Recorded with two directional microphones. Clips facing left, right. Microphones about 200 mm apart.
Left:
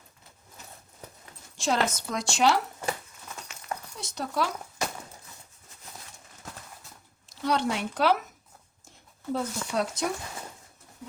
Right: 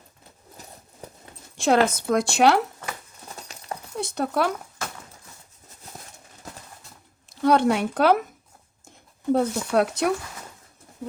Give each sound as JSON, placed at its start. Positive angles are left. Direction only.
{"t": 1.5, "sound": "speech", "side_deg": -60}
{"t": 3.2, "sound": "clip-clop", "side_deg": -35}
{"t": 3.9, "sound": "speech", "side_deg": -55}
{"t": 7.3, "sound": "speech", "side_deg": -55}
{"t": 9.3, "sound": "speech", "side_deg": -60}